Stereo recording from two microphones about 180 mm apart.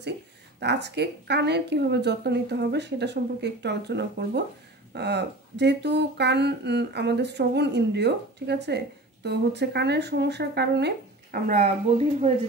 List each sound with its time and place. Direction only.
0.6 s speech: 70° right (ahead or behind)
11.5 s speech: 35° right (ahead or behind)